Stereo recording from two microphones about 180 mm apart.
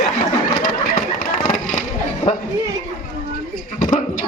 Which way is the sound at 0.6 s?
50° left (ahead or behind).